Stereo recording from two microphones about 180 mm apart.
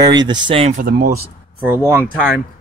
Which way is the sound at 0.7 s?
50° right (ahead or behind).